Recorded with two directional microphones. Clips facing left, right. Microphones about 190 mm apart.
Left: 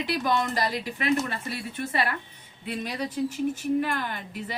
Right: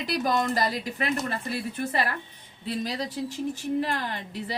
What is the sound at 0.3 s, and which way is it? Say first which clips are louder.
A woman's voice: right 2 dB; 40° right (ahead or behind).